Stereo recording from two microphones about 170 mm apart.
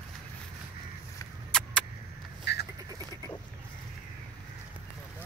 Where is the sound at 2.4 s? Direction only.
85° left.